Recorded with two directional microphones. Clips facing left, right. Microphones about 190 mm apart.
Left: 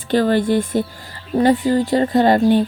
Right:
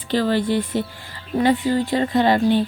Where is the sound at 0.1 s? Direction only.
50° left (ahead or behind).